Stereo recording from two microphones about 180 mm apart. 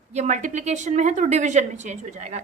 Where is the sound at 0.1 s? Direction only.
40° right (ahead or behind).